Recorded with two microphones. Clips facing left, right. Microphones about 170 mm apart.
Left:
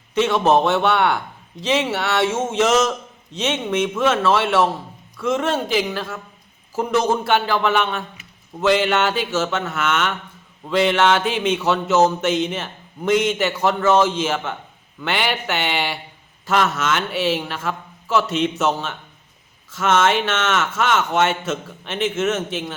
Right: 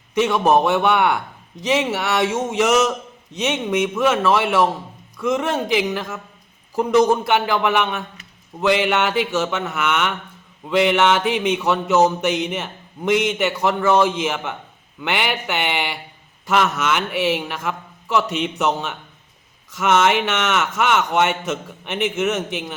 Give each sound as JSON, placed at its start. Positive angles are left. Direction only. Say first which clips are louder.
{"t": 0.1, "sound": "a man's voice", "louder": "even", "side_deg": -15}